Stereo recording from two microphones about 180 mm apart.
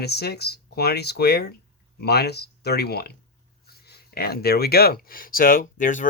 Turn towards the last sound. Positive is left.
turn(degrees=45)  # may be behind; listen again after turning